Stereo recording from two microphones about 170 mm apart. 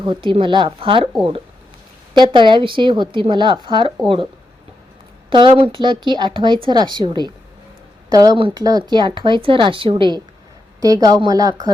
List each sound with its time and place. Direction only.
0.0 s speech: 30° right (ahead or behind)
2.1 s speech: 30° right (ahead or behind)
5.3 s speech: 30° right (ahead or behind)